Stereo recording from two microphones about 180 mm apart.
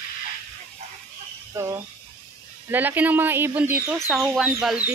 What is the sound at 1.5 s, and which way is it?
Speech, 15° right (ahead or behind).